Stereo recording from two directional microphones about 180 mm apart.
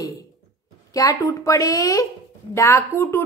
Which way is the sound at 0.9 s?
20° left (ahead or behind).